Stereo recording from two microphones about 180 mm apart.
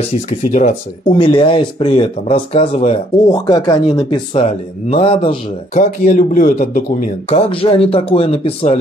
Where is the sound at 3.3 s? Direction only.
25° left (ahead or behind).